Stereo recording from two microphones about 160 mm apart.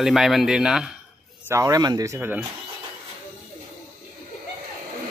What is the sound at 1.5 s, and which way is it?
Speech, 20° right (ahead or behind).